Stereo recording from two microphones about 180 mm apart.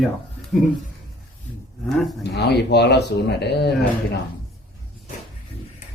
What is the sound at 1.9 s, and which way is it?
Speech, centre (ahead or behind).